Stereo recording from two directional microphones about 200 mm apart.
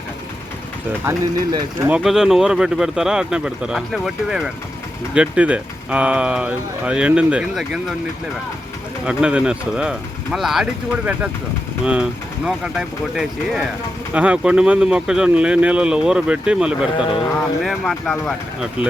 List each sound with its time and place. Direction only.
1.0 s speech: 15° right (ahead or behind)
1.9 s speech: centre (ahead or behind)
9.0 s speech: 5° right (ahead or behind)
12.5 s speech: 5° right (ahead or behind)
17.0 s speech: 25° left (ahead or behind)
17.6 s speech: centre (ahead or behind)